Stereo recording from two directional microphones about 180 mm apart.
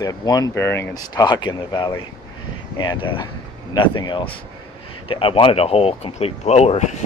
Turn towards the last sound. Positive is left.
turn(degrees=40)  # may be behind; listen again after turning